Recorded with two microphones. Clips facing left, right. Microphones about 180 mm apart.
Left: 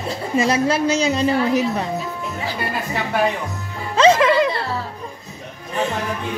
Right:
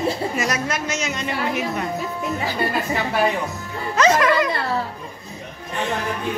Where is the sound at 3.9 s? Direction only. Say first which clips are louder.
Left 3 dB; 30° left (ahead or behind).